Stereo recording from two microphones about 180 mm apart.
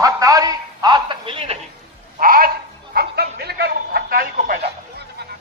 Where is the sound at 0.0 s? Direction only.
20° right (ahead or behind).